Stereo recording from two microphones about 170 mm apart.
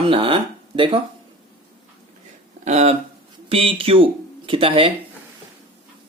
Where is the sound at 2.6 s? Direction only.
40° right (ahead or behind).